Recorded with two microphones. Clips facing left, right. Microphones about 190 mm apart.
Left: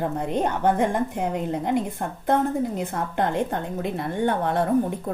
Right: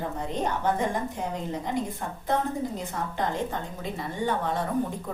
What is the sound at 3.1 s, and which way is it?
A woman's voice, 60° left (ahead or behind).